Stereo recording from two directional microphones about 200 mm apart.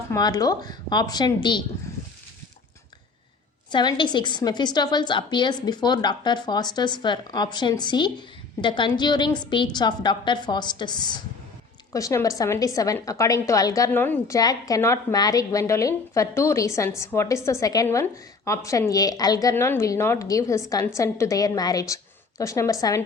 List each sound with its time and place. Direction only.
0.1 s a woman's voice: 20° left (ahead or behind)
3.7 s a woman's voice: 20° left (ahead or behind)